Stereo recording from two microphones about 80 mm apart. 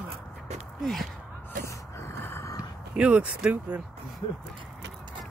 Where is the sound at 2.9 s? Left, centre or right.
Centre.